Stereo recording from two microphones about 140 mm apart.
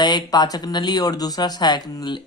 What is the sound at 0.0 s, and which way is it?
Speech, 30° left (ahead or behind).